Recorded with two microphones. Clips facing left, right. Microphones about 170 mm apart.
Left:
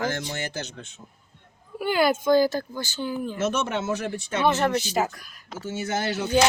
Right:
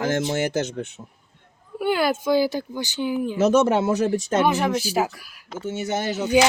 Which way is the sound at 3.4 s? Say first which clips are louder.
Right 10 dB; 35° right (ahead or behind).